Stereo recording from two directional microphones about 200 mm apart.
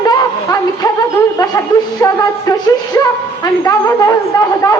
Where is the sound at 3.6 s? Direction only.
15° left (ahead or behind).